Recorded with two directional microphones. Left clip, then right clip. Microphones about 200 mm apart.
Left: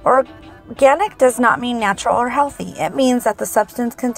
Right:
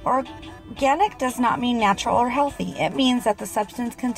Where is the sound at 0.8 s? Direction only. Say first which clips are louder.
Left 7 dB; 25° left (ahead or behind).